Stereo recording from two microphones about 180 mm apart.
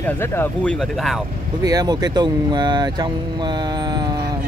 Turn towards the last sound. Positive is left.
turn(degrees=-25)  # may be behind; listen again after turning